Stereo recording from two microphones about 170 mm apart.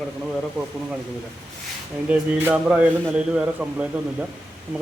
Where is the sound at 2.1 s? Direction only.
5° right (ahead or behind).